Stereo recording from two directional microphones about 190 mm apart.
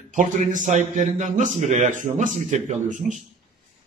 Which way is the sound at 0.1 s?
40° right (ahead or behind).